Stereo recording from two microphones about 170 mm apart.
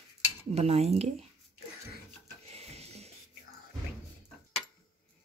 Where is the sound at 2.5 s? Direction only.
40° right (ahead or behind).